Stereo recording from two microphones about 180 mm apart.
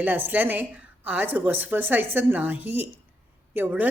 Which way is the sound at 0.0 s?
10° right (ahead or behind).